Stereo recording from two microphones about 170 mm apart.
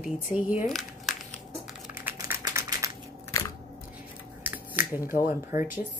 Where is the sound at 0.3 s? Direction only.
10° right (ahead or behind).